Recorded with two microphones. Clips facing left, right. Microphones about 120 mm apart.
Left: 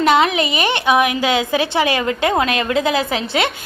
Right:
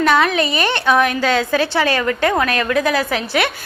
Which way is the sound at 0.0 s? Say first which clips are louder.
Left 1 dB; 20° left (ahead or behind).